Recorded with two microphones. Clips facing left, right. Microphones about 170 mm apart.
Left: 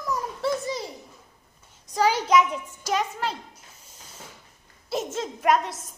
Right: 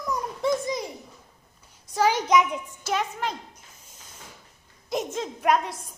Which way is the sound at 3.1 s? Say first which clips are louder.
Left 1 dB; 10° left (ahead or behind).